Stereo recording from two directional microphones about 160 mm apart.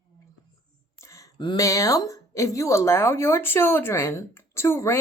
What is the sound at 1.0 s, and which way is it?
A woman's voice, 20° left (ahead or behind).